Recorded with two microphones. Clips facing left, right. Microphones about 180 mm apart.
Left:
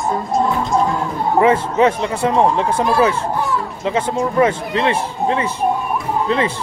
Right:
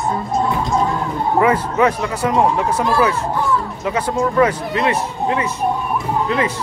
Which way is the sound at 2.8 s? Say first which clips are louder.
Left 2 dB; 20° left (ahead or behind).